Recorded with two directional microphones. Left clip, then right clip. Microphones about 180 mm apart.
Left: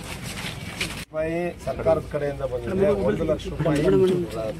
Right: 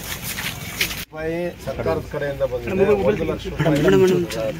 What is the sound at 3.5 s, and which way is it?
Speech, 20° right (ahead or behind).